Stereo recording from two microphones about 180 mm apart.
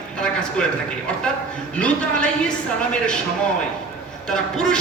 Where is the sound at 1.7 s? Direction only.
5° left (ahead or behind).